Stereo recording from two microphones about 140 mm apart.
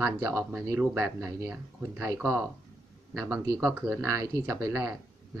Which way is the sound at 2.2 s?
5° right (ahead or behind).